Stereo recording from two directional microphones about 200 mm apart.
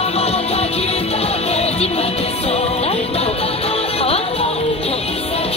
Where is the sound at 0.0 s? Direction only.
30° left (ahead or behind).